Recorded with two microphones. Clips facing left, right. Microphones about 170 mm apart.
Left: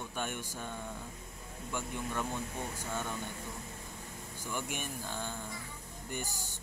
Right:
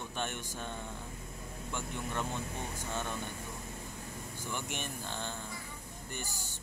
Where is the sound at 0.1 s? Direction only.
10° left (ahead or behind).